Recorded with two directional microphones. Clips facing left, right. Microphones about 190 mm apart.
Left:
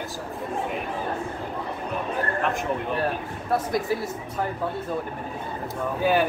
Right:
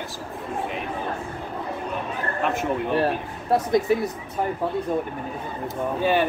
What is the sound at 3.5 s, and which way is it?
Speech, 20° right (ahead or behind).